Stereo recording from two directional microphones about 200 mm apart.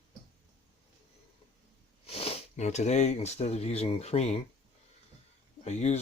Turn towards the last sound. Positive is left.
turn(degrees=35)  # may be behind; listen again after turning